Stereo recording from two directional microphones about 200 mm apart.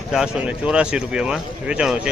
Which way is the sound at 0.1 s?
5° right (ahead or behind).